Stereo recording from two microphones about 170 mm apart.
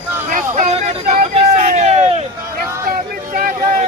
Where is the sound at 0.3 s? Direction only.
50° right (ahead or behind).